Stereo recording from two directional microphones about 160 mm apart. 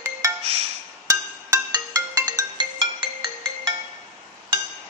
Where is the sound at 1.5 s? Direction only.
20° right (ahead or behind).